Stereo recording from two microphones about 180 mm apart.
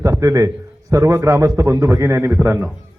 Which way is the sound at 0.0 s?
15° right (ahead or behind).